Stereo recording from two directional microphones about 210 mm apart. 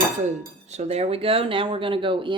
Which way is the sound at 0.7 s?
30° right (ahead or behind).